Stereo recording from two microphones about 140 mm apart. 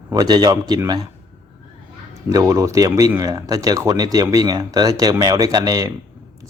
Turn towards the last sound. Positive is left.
turn(degrees=-25)  # may be behind; listen again after turning